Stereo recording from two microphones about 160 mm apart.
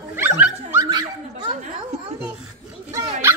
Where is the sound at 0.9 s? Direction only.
25° right (ahead or behind).